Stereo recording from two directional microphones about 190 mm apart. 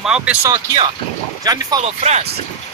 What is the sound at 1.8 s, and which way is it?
Speech, 35° right (ahead or behind).